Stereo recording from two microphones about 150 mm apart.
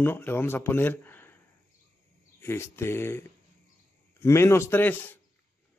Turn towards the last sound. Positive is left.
turn(degrees=15)  # may be behind; listen again after turning